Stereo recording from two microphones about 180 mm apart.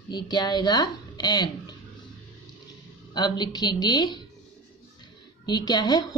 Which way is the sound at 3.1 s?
25° left (ahead or behind).